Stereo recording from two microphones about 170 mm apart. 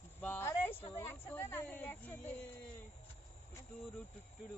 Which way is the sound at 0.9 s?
15° left (ahead or behind).